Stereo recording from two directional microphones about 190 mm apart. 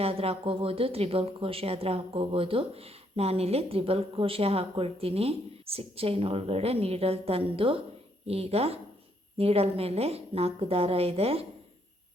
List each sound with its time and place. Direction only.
0.0 s speech: 30° right (ahead or behind)